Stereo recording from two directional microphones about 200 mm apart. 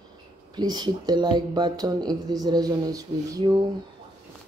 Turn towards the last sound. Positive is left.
turn(degrees=-20)  # may be behind; listen again after turning